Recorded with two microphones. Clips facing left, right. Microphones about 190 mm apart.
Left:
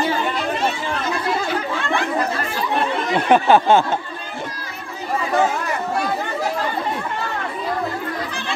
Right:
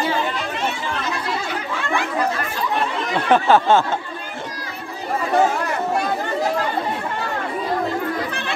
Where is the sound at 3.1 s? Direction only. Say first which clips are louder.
Left 1 dB; 15° left (ahead or behind).